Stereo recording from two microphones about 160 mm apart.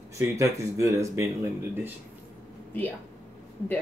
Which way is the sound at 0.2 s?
20° right (ahead or behind).